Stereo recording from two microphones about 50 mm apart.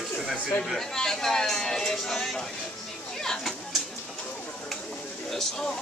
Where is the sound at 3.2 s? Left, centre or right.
Centre.